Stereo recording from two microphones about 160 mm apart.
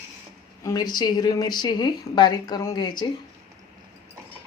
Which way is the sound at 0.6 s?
25° left (ahead or behind).